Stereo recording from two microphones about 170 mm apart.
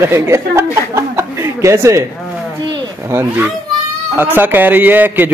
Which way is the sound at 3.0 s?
15° right (ahead or behind).